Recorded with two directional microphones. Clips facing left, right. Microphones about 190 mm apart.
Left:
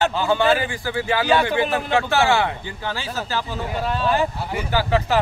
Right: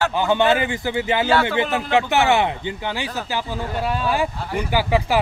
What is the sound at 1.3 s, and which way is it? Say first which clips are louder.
Speech: left 2 dB; 15° left (ahead or behind).